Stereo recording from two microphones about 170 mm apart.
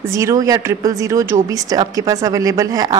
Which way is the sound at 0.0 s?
20° right (ahead or behind).